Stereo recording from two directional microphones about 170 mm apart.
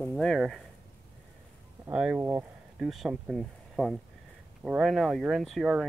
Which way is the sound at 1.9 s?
5° right (ahead or behind).